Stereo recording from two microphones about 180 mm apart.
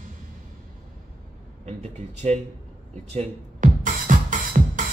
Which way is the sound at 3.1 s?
40° right (ahead or behind).